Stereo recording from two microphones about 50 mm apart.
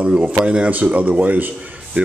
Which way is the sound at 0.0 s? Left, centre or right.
Right.